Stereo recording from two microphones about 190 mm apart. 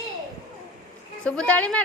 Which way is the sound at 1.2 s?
5° left (ahead or behind).